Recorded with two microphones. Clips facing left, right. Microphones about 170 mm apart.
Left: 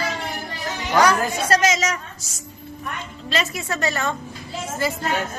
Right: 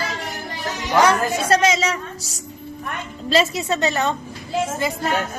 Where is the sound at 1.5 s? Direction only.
30° right (ahead or behind).